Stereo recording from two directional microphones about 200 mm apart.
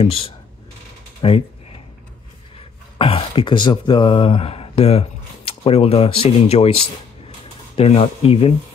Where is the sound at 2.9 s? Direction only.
25° left (ahead or behind).